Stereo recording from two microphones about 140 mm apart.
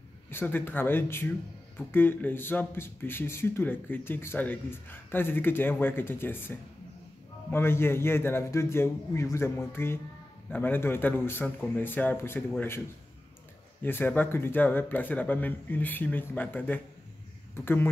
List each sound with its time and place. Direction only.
0.3 s speech: 15° left (ahead or behind)
13.8 s speech: 15° left (ahead or behind)